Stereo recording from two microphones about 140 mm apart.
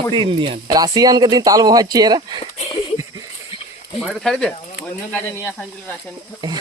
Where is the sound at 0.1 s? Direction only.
35° right (ahead or behind).